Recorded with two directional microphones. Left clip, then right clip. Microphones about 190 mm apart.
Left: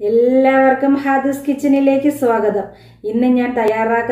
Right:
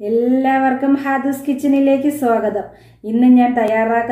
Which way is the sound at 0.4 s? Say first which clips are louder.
Left 4 dB; 35° right (ahead or behind).